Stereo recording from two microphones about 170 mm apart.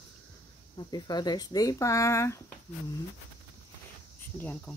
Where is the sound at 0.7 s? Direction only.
25° left (ahead or behind).